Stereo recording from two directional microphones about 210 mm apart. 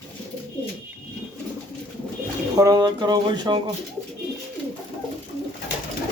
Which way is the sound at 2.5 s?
15° right (ahead or behind).